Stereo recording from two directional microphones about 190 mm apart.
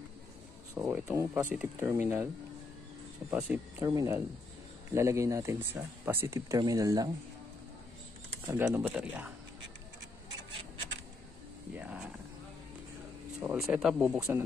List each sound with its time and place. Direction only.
0.7 s speech: 10° right (ahead or behind)
3.3 s speech: 10° right (ahead or behind)
8.5 s speech: 15° right (ahead or behind)
11.7 s vehicle: 5° right (ahead or behind)
13.4 s speech: 5° right (ahead or behind)